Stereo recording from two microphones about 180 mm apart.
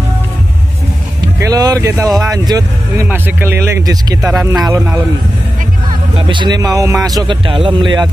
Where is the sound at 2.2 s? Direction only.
20° right (ahead or behind).